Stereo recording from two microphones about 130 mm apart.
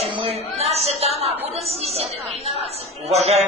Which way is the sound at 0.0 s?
50° right (ahead or behind).